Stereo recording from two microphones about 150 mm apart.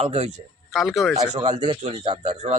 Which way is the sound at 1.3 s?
50° right (ahead or behind).